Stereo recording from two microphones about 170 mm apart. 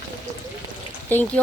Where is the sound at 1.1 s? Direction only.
10° left (ahead or behind).